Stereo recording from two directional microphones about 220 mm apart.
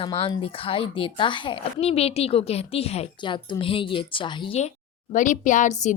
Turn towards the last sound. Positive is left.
turn(degrees=35)  # may be behind; listen again after turning